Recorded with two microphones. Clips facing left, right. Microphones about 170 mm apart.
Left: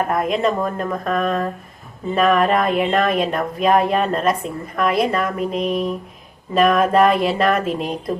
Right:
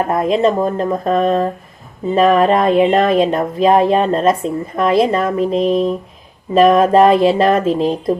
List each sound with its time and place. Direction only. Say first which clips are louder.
0.1 s speech: right 5 dB; 25° right (ahead or behind)